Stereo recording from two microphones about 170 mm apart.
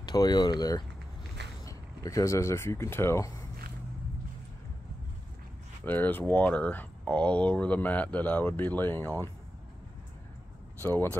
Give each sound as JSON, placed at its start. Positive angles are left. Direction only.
{"t": 0.0, "sound": "speech", "side_deg": 25}
{"t": 5.9, "sound": "speech", "side_deg": 10}
{"t": 10.8, "sound": "speech", "side_deg": 10}